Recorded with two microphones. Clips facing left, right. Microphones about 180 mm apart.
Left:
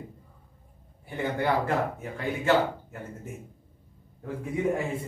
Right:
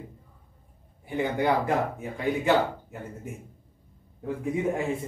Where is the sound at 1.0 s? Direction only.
15° right (ahead or behind).